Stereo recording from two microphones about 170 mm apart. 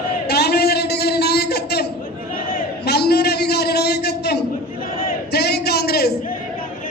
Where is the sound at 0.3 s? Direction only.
70° left (ahead or behind).